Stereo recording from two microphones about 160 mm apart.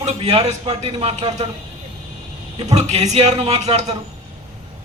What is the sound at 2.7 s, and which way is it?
A man's voice, 45° right (ahead or behind).